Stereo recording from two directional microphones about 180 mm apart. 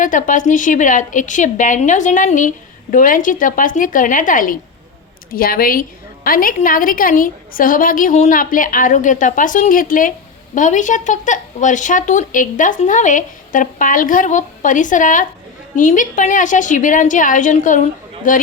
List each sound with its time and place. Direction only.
0.0 s speech: 45° left (ahead or behind)